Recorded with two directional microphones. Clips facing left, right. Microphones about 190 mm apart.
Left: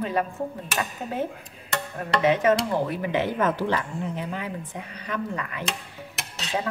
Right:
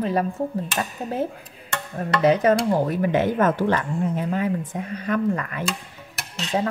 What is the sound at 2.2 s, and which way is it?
Speech, 40° right (ahead or behind).